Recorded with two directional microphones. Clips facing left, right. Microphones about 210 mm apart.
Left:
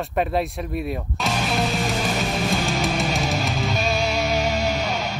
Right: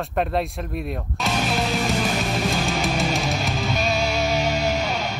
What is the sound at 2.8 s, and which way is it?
Music, centre (ahead or behind).